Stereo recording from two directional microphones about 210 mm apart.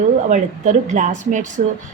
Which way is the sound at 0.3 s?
35° right (ahead or behind).